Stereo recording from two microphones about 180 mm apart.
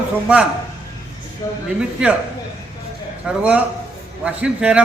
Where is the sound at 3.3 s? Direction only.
5° right (ahead or behind).